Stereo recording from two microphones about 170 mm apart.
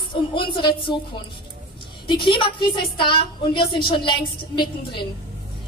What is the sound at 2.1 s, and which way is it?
A woman's voice, 30° left (ahead or behind).